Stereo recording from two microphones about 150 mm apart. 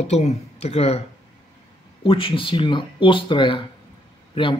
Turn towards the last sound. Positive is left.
turn(degrees=35)  # may be behind; listen again after turning